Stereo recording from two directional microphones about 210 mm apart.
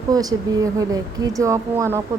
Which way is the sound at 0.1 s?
15° right (ahead or behind).